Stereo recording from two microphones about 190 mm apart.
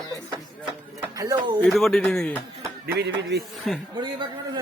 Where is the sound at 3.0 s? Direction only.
65° right (ahead or behind).